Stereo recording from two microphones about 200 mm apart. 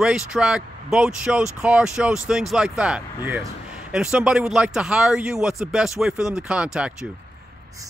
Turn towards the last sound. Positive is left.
turn(degrees=-5)  # may be behind; listen again after turning